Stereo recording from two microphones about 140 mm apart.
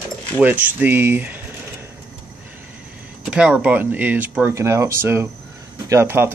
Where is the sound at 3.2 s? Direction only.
5° right (ahead or behind).